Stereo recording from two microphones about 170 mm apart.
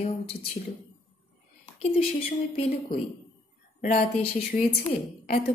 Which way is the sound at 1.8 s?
35° left (ahead or behind).